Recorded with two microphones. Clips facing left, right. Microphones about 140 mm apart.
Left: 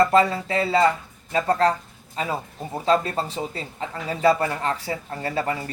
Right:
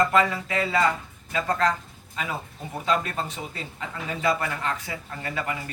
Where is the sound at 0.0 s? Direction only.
35° left (ahead or behind).